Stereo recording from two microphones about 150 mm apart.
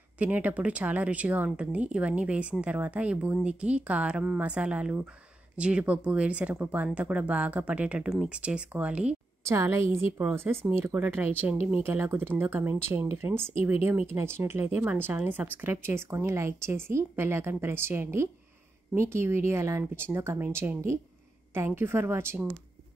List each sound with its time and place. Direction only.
0.2 s speech: 10° right (ahead or behind)
9.4 s a woman's voice: 20° right (ahead or behind)